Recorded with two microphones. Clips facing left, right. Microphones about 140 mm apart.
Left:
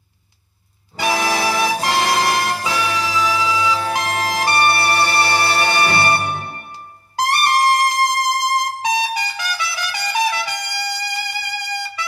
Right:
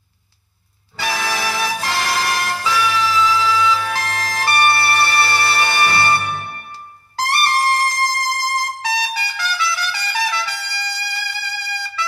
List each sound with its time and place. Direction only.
1.0 s music: 25° left (ahead or behind)
3.3 s music: 20° left (ahead or behind); by 5.9 s 40° left (ahead or behind)
5.9 s music: 25° left (ahead or behind)
7.2 s trumpet: 20° left (ahead or behind)
8.5 s music: 20° left (ahead or behind)
9.6 s trumpet: 20° left (ahead or behind)